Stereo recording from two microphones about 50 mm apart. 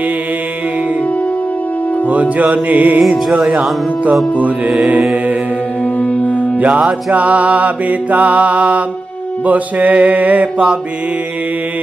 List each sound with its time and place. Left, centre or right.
2.0 s music: right
3.1 s music: centre
5.9 s music: left
7.1 s mantra: right